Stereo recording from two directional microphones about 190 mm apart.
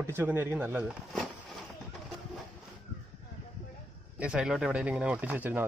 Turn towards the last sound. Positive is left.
turn(degrees=-10)  # may be behind; listen again after turning